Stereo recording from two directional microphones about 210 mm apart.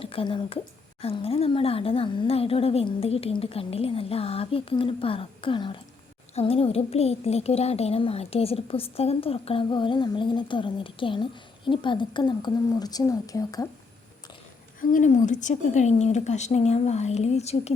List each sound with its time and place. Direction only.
0.0 s a woman's voice: 25° left (ahead or behind)
14.8 s speech: 40° left (ahead or behind)